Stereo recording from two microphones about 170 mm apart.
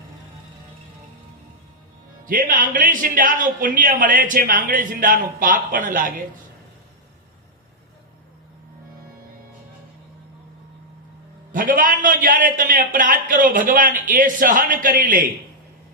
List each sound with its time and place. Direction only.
2.2 s a man's voice: 50° right (ahead or behind)
11.5 s a man's voice: 55° right (ahead or behind)